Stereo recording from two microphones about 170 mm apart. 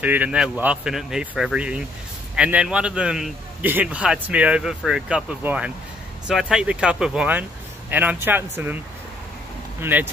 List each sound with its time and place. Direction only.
0.0 s a man's voice: 10° right (ahead or behind)
9.8 s speech: 10° right (ahead or behind)